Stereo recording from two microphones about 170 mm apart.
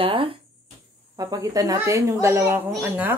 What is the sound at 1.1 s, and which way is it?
Speech, 20° right (ahead or behind).